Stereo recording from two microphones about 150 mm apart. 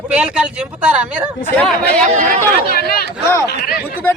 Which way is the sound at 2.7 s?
90° left.